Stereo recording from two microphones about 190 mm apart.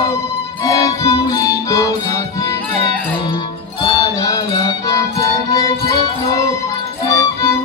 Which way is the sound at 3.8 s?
20° left (ahead or behind).